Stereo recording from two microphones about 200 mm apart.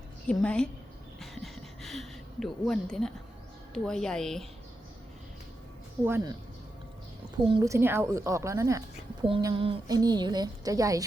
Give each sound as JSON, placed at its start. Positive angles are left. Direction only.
{"t": 0.4, "sound": "speech", "side_deg": 5}
{"t": 1.2, "sound": "a sound", "side_deg": 0}
{"t": 3.8, "sound": "speech", "side_deg": 5}
{"t": 6.1, "sound": "speech", "side_deg": -10}
{"t": 7.4, "sound": "a woman's voice", "side_deg": -20}